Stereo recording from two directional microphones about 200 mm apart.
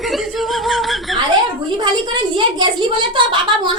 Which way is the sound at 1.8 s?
20° right (ahead or behind).